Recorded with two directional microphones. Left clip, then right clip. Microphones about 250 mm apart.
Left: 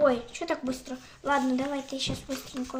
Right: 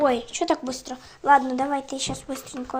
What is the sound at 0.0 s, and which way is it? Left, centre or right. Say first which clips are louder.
A woman's voice: right 3 dB; right.